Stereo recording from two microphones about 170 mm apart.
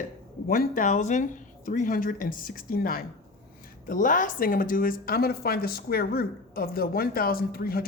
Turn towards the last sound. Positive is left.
turn(degrees=60)  # may be behind; listen again after turning